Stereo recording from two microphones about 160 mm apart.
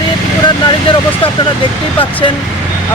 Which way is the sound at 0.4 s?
35° left (ahead or behind).